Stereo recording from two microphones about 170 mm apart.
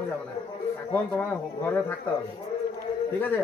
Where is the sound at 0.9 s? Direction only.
10° left (ahead or behind).